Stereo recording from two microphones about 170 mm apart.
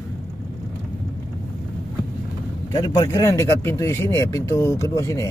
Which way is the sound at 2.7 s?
25° left (ahead or behind).